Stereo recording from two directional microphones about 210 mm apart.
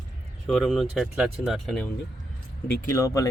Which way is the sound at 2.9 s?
15° left (ahead or behind).